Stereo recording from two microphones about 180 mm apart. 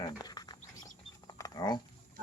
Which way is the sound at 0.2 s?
20° left (ahead or behind).